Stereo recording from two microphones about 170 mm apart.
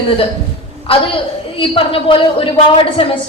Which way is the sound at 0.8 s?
30° left (ahead or behind).